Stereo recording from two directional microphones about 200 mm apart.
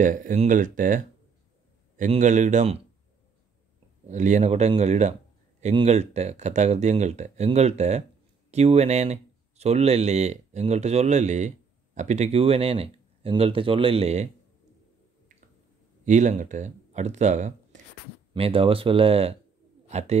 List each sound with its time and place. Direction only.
0.0 s speech: 40° right (ahead or behind)
4.1 s speech: 35° right (ahead or behind)
16.1 s speech: 35° right (ahead or behind)